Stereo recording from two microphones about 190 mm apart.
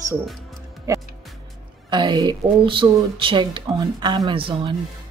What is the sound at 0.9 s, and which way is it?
Music, 15° right (ahead or behind).